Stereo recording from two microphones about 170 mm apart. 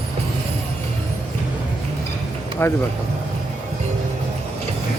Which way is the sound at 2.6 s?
15° left (ahead or behind).